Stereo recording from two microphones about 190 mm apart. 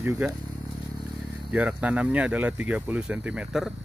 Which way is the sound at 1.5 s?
5° right (ahead or behind).